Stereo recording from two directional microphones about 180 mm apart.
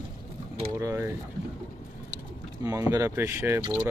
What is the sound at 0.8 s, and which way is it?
Speech, 15° right (ahead or behind).